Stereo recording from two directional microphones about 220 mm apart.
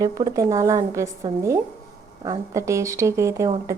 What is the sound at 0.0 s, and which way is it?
Speech, 15° right (ahead or behind).